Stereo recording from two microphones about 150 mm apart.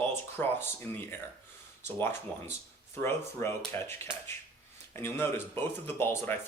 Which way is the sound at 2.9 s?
15° left (ahead or behind).